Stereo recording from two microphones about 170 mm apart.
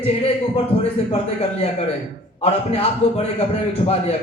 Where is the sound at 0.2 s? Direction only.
35° left (ahead or behind).